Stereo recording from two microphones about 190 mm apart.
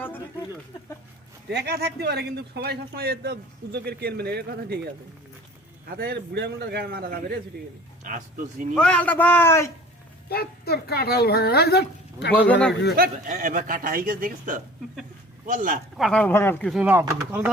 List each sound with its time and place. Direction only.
1.5 s speech: 60° right (ahead or behind)
6.0 s a man's voice: 60° right (ahead or behind); by 8.2 s 45° right (ahead or behind)
8.7 s a man's voice: 5° left (ahead or behind)
10.2 s a woman's voice: 55° left (ahead or behind)
12.4 s a man's voice: 5° left (ahead or behind)
13.0 s a man's voice: 45° right (ahead or behind)
16.0 s a man's voice: 5° left (ahead or behind)
16.7 s speech: 10° right (ahead or behind)